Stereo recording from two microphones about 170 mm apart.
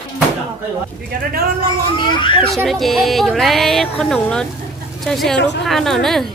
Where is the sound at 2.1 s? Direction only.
30° left (ahead or behind).